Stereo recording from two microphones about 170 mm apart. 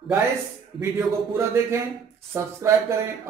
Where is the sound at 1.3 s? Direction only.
15° right (ahead or behind).